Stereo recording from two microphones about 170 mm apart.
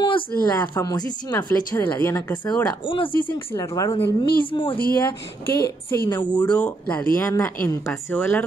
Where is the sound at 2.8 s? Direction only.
30° left (ahead or behind).